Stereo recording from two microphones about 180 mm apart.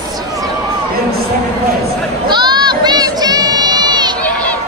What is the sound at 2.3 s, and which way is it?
Crowd, 25° right (ahead or behind).